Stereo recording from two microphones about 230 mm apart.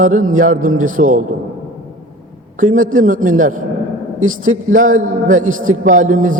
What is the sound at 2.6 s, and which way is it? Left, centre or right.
A man's voice, right.